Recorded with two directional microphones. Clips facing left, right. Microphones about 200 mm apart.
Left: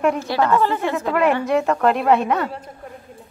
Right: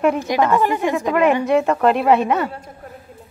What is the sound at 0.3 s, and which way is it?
Speech, 15° right (ahead or behind).